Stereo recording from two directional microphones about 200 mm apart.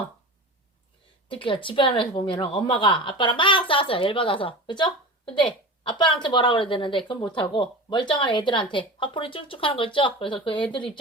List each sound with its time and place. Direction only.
1.4 s speech: 25° left (ahead or behind)